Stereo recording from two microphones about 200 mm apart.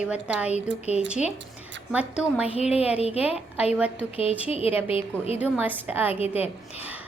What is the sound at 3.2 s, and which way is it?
Speech, 5° right (ahead or behind).